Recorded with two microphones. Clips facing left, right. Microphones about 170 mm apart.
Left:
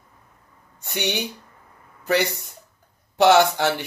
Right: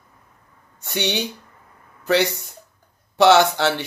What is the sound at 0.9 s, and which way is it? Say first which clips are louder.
Speech: right 2 dB; 10° left (ahead or behind).